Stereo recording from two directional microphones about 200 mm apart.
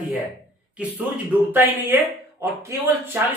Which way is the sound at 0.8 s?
5° right (ahead or behind).